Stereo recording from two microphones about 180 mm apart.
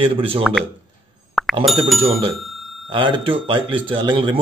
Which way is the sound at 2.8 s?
25° right (ahead or behind).